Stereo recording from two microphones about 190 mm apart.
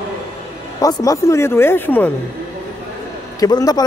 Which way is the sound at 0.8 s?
20° left (ahead or behind).